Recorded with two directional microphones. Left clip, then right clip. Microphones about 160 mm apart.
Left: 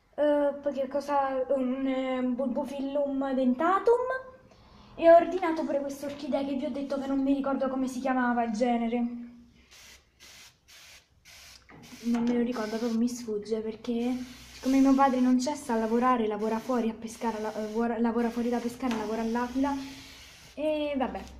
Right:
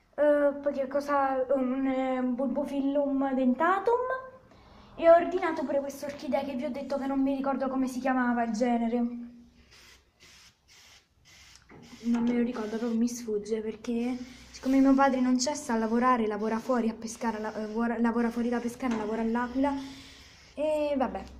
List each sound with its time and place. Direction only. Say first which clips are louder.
0.1 s a woman's voice: right 1 dB; 5° left (ahead or behind)
4.9 s a woman's voice: left 2 dB; 10° left (ahead or behind)
12.4 s a woman's voice: left 1 dB; 5° left (ahead or behind)